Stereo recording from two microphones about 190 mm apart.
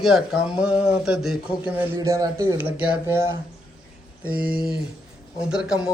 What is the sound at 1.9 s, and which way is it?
A woman's voice, 15° right (ahead or behind).